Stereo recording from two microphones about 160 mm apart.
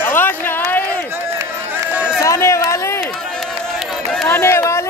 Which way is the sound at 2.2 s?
20° left (ahead or behind).